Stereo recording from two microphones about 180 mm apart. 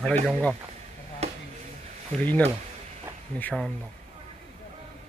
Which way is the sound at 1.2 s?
35° right (ahead or behind).